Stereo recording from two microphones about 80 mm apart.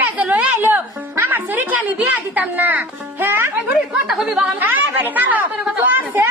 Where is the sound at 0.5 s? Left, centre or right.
Right.